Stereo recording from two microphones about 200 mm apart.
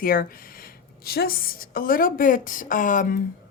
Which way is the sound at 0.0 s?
45° left (ahead or behind).